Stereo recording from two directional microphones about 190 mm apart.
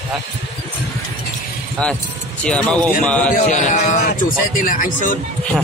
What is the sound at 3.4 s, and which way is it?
Speech, 40° left (ahead or behind).